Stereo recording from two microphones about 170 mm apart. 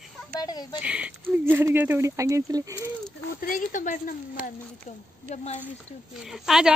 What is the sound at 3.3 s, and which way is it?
A woman's voice, 55° left (ahead or behind).